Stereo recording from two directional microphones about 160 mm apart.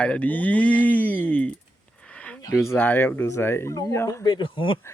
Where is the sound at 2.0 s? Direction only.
5° left (ahead or behind).